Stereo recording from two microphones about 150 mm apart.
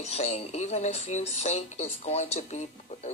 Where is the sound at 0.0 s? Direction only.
45° left (ahead or behind).